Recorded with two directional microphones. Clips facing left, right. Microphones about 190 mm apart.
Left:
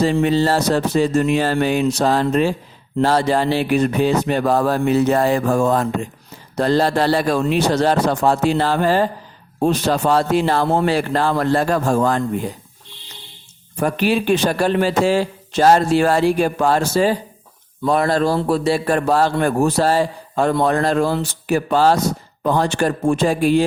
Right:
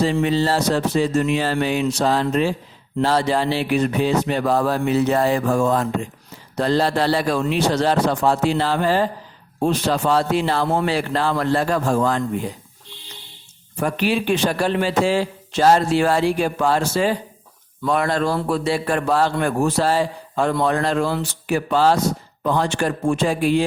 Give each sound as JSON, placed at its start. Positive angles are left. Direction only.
{"t": 0.0, "sound": "a man's voice", "side_deg": 45}
{"t": 13.7, "sound": "a man's voice", "side_deg": 40}